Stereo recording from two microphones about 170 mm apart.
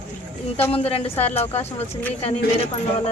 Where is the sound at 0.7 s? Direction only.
35° left (ahead or behind).